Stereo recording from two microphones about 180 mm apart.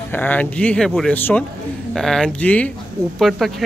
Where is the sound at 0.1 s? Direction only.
10° left (ahead or behind).